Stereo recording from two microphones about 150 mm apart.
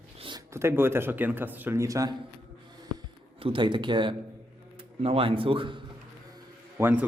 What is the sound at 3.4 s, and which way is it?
A man's voice, 35° right (ahead or behind).